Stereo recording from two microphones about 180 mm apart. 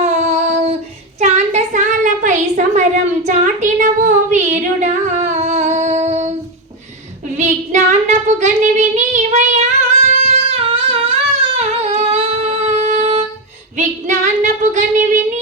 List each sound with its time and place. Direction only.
0.0 s child singing: 40° right (ahead or behind)
1.2 s a sound: 40° right (ahead or behind)
7.3 s child singing: 40° right (ahead or behind)
10.2 s singing: 35° right (ahead or behind)
11.5 s a sound: 35° right (ahead or behind)
13.7 s female singing: 40° right (ahead or behind)